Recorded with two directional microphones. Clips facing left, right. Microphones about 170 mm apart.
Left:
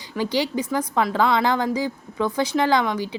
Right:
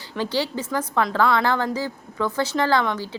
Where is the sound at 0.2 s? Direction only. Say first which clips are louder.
Left 2 dB; 15° left (ahead or behind).